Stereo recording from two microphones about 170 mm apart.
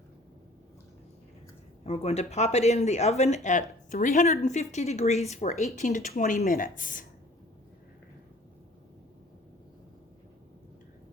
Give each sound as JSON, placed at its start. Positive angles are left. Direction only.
{"t": 1.8, "sound": "speech", "side_deg": 35}